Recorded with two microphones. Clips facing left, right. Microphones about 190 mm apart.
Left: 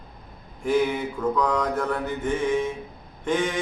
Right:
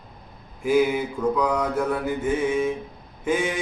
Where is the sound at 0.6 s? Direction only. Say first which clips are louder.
Right 2 dB; 10° right (ahead or behind).